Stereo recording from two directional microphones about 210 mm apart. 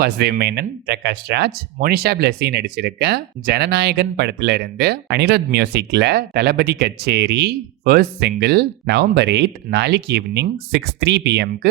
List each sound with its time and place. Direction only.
0.0 s speech: 50° right (ahead or behind)